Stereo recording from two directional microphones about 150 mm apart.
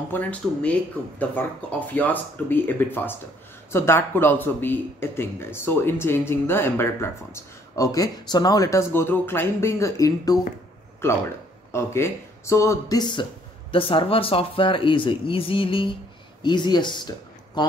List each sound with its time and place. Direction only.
0.1 s speech: 10° left (ahead or behind)
11.7 s speech: 15° left (ahead or behind)